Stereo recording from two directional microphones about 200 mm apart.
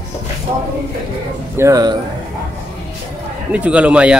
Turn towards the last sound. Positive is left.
turn(degrees=-5)  # may be behind; listen again after turning